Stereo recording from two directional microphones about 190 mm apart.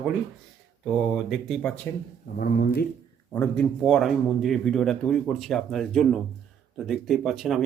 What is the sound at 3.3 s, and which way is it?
Speech, 5° left (ahead or behind).